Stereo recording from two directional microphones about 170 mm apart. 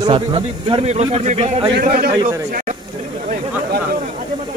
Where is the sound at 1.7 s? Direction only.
60° right (ahead or behind).